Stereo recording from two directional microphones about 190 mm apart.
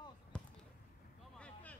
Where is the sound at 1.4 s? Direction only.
10° left (ahead or behind).